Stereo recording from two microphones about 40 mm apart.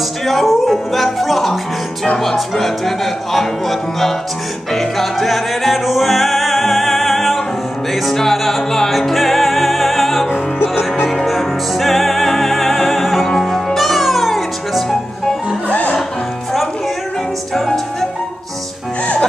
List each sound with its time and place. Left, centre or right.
0.3 s speech: centre
4.7 s music: centre
13.3 s music: centre
15.7 s music: left